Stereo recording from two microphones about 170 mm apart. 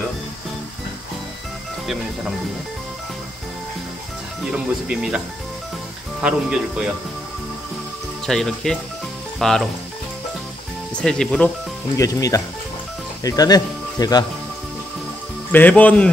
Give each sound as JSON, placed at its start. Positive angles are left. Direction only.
{"t": 4.5, "sound": "speech", "side_deg": -5}
{"t": 6.2, "sound": "speech", "side_deg": -5}
{"t": 8.3, "sound": "speech", "side_deg": 0}
{"t": 11.0, "sound": "speech", "side_deg": 5}
{"t": 12.0, "sound": "speech", "side_deg": 20}
{"t": 15.5, "sound": "speech", "side_deg": 10}